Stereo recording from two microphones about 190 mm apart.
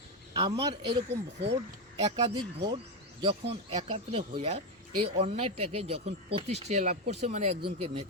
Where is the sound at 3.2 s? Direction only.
25° right (ahead or behind).